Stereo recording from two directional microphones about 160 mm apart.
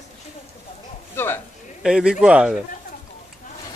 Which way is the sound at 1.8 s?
5° right (ahead or behind).